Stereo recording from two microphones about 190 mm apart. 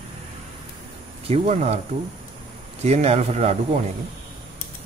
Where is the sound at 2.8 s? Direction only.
35° right (ahead or behind).